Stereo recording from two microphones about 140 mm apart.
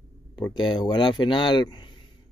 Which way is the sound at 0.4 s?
35° left (ahead or behind).